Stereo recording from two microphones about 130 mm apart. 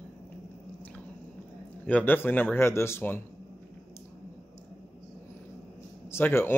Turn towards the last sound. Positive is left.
turn(degrees=15)  # may be behind; listen again after turning